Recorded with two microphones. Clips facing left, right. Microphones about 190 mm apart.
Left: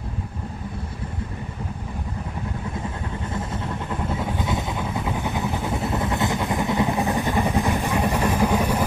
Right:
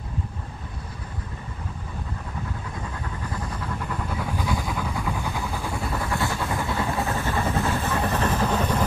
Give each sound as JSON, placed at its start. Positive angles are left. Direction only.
{"t": 3.3, "sound": "vehicle", "side_deg": 25}